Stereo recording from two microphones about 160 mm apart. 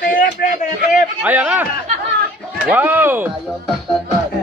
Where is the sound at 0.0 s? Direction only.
60° left (ahead or behind).